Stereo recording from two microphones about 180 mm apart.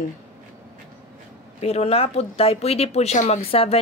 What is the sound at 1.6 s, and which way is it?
Speech, 35° left (ahead or behind).